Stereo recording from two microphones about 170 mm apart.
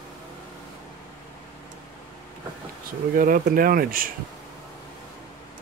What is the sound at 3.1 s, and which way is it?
Speech, 55° right (ahead or behind).